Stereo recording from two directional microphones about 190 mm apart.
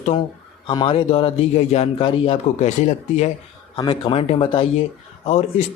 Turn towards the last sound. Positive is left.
turn(degrees=35)  # may be behind; listen again after turning